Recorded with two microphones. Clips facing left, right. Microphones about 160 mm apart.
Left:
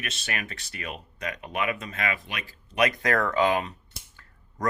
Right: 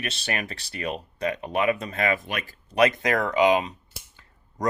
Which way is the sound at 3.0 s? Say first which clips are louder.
Right 2 dB; 15° right (ahead or behind).